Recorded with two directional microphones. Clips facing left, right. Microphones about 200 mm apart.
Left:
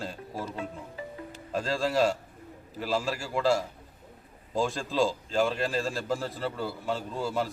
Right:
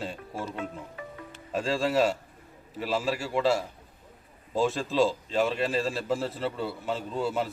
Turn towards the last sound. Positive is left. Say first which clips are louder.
# right 1 dB
turn(degrees=0)  # may be behind; listen again after turning